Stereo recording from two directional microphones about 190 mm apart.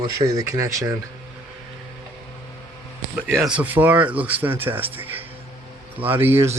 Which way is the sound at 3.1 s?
5° right (ahead or behind).